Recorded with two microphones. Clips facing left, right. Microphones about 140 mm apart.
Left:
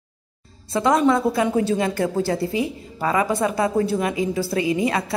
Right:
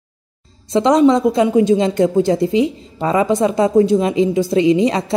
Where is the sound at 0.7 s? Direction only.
20° right (ahead or behind).